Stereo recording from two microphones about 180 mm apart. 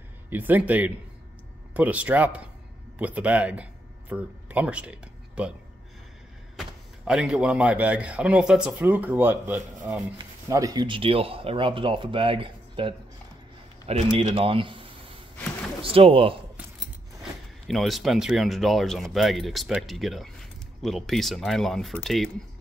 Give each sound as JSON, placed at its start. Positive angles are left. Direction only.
{"t": 0.3, "sound": "speech", "side_deg": -10}
{"t": 7.1, "sound": "speech", "side_deg": -5}
{"t": 15.3, "sound": "a sound", "side_deg": 10}
{"t": 15.8, "sound": "speech", "side_deg": -30}
{"t": 17.2, "sound": "speech", "side_deg": 0}